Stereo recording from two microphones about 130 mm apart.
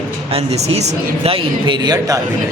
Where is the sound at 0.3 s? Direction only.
50° right (ahead or behind); by 2.2 s 30° right (ahead or behind).